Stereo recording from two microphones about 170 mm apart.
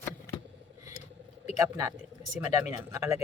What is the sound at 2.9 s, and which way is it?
Speech, 15° right (ahead or behind).